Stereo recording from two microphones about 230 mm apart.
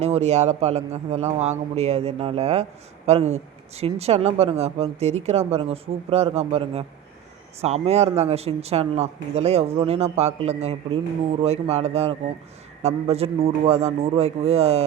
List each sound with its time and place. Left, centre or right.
0.0 s speech: right